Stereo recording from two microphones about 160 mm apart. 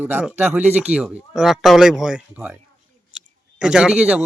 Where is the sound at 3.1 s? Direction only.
5° right (ahead or behind).